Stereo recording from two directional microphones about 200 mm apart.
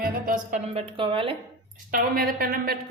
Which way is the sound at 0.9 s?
25° right (ahead or behind).